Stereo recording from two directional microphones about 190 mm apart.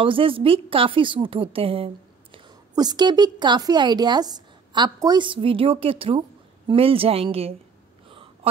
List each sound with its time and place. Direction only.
0.0 s a woman's voice: 30° right (ahead or behind)